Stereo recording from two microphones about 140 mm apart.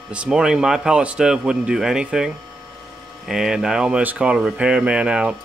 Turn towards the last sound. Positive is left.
turn(degrees=-5)  # may be behind; listen again after turning